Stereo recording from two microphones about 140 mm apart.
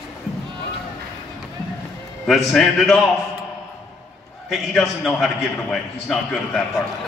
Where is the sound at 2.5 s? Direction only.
Centre (ahead or behind).